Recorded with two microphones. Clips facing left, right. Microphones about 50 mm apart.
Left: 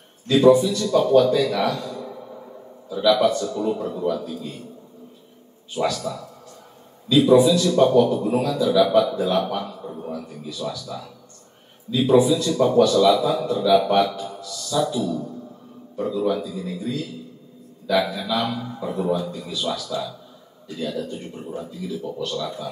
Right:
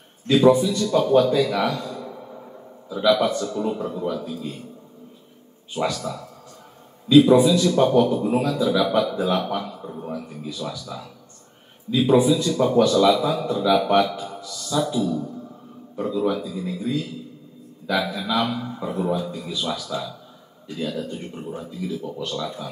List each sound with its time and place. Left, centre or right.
0.3 s a man's voice: right
5.8 s a man's voice: right
12.1 s a man's voice: right